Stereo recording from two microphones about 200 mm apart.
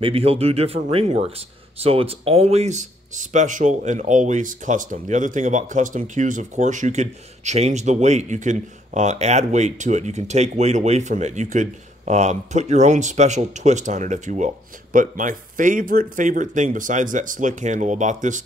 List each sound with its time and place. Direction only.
0.0 s speech: 30° right (ahead or behind)